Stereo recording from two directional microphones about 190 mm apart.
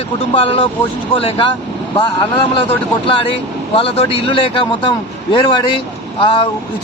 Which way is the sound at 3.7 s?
30° left (ahead or behind).